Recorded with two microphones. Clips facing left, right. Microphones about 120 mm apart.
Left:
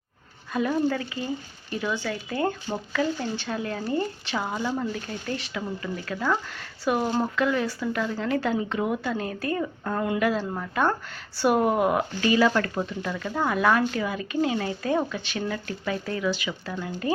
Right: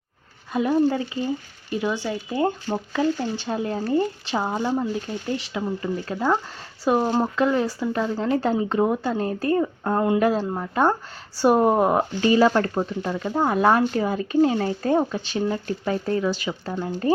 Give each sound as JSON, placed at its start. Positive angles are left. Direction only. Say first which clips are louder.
{"t": 0.5, "sound": "speech", "louder": "right 4 dB", "side_deg": -20}